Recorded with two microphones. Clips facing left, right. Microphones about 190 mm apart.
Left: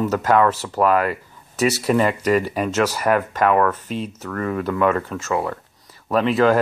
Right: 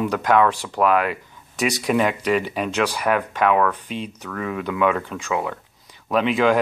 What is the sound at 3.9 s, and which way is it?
Speech, 40° left (ahead or behind).